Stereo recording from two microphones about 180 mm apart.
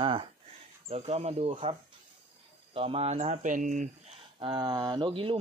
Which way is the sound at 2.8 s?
35° right (ahead or behind).